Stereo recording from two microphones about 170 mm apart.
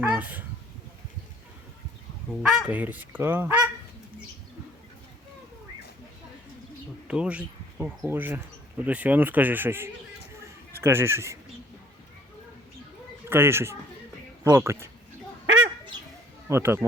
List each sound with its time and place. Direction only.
0.0 s speech: 10° right (ahead or behind)
2.3 s honk: 10° right (ahead or behind)
7.1 s speech: 5° right (ahead or behind)
8.8 s honk: 10° right (ahead or behind)
10.8 s speech: 15° right (ahead or behind)
13.3 s honk: 15° right (ahead or behind)
16.5 s honk: 15° right (ahead or behind)